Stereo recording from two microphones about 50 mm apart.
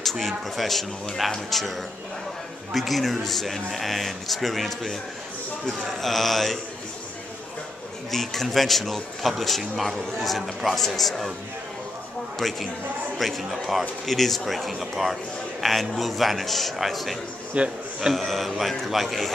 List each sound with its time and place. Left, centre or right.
0.0 s a man's voice: centre
5.9 s a man's voice: centre
8.1 s a man's voice: centre
12.4 s a man's voice: centre
17.6 s speech: right
18.1 s a man's voice: centre